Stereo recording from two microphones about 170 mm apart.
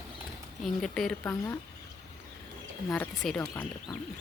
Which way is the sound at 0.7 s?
Centre (ahead or behind).